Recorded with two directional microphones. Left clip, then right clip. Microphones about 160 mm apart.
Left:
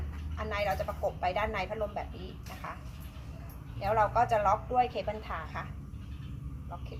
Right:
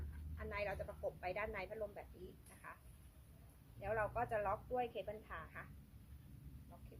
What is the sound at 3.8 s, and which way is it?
A woman's voice, 15° right (ahead or behind).